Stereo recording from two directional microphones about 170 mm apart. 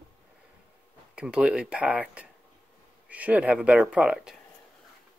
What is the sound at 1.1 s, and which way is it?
Speech, 5° right (ahead or behind).